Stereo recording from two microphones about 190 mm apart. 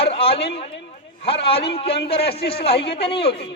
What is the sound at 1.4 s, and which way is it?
A man's voice, 30° left (ahead or behind).